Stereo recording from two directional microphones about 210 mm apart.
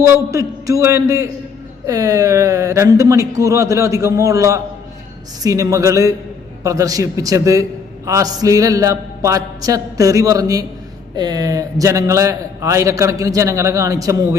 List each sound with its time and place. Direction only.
0.3 s a man's voice: 15° right (ahead or behind)